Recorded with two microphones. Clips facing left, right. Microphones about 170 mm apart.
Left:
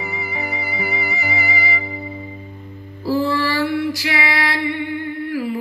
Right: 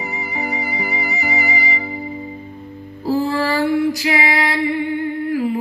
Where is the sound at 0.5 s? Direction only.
35° right (ahead or behind).